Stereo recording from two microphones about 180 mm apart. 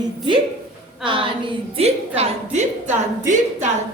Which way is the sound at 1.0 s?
30° right (ahead or behind).